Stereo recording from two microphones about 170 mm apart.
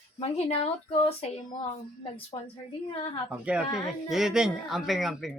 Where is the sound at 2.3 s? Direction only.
30° left (ahead or behind).